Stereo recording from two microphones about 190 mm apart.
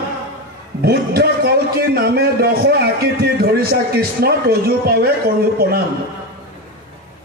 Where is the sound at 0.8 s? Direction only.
55° right (ahead or behind).